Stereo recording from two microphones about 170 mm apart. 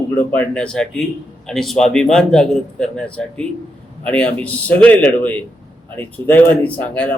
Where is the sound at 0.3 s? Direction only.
5° left (ahead or behind).